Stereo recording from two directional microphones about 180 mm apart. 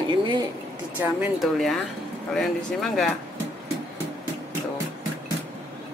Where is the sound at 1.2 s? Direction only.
Centre (ahead or behind).